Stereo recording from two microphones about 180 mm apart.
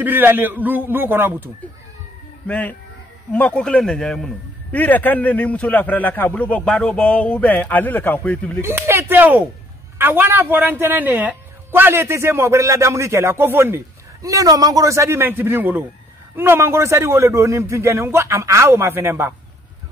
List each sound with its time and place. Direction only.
0.0 s speech: 10° right (ahead or behind)
2.4 s a man's voice: 5° left (ahead or behind)
8.5 s speech: 15° right (ahead or behind)